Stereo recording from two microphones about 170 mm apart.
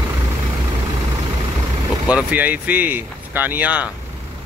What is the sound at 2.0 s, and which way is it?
Speech, 10° right (ahead or behind).